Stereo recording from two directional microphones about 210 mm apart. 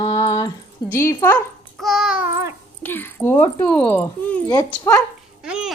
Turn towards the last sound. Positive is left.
turn(degrees=-5)  # may be behind; listen again after turning